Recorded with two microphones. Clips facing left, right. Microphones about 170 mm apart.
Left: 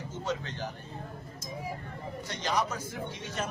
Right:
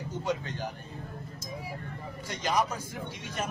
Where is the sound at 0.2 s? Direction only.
10° right (ahead or behind).